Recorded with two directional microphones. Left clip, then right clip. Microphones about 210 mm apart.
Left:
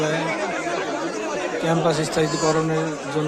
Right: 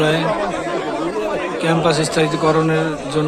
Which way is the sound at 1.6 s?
10° left (ahead or behind).